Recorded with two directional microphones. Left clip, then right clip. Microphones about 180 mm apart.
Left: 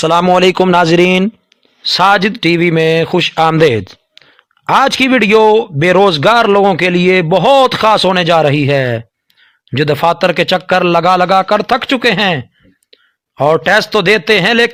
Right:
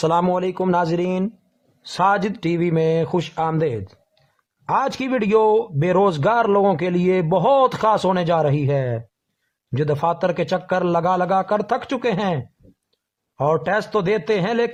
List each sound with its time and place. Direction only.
0.0 s speech: 25° left (ahead or behind)
0.3 s a man's voice: 45° left (ahead or behind)
0.7 s speech: 30° left (ahead or behind)